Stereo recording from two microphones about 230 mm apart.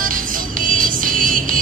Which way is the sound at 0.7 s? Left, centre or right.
Right.